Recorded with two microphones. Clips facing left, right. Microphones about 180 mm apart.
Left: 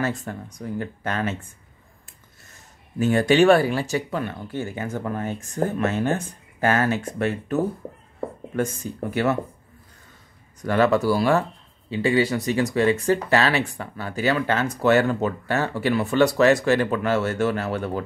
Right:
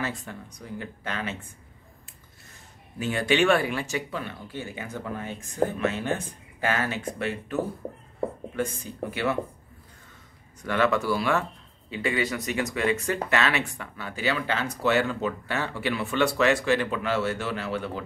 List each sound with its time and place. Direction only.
0.0 s speech: 45° left (ahead or behind)
3.0 s speech: 45° left (ahead or behind)
9.1 s speech: 45° left (ahead or behind)
10.6 s speech: 40° left (ahead or behind)